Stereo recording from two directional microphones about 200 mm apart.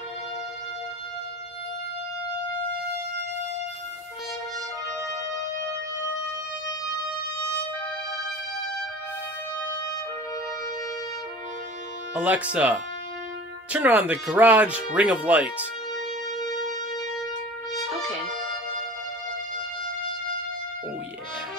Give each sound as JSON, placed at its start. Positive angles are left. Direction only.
{"t": 12.1, "sound": "speech", "side_deg": -5}
{"t": 16.3, "sound": "music", "side_deg": 20}